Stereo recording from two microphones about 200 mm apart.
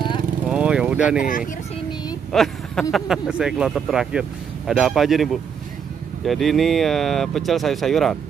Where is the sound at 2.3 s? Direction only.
Centre (ahead or behind).